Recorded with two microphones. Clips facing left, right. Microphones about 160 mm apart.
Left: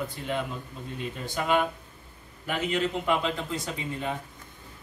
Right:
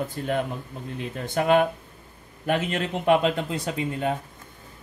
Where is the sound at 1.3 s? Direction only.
60° right (ahead or behind).